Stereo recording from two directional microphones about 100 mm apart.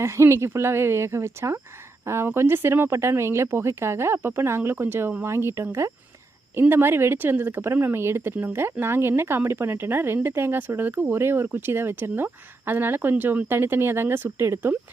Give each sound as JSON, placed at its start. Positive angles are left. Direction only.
{"t": 0.0, "sound": "speech", "side_deg": -30}